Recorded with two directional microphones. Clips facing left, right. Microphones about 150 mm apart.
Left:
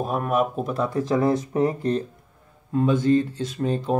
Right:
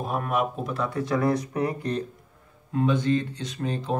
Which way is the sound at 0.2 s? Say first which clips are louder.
Left 4 dB; 45° left (ahead or behind).